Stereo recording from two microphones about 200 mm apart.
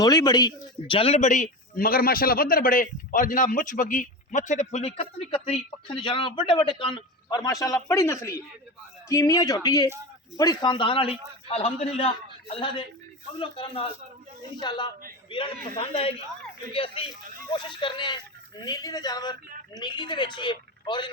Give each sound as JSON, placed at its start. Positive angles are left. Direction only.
{"t": 0.0, "sound": "a man's voice", "side_deg": 20}